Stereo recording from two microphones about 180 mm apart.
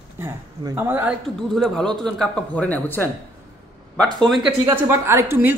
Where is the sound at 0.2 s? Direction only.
10° right (ahead or behind).